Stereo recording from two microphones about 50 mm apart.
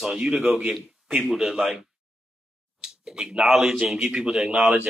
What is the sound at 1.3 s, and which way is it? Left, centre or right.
Speech, centre.